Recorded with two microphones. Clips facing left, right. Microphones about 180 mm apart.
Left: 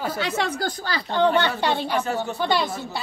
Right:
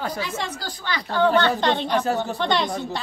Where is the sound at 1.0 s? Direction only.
20° left (ahead or behind).